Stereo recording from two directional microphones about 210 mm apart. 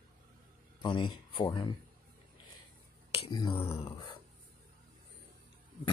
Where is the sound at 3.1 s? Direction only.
25° left (ahead or behind).